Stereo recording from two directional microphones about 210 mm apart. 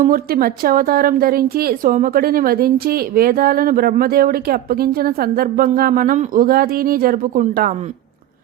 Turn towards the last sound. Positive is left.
turn(degrees=-40)  # may be behind; listen again after turning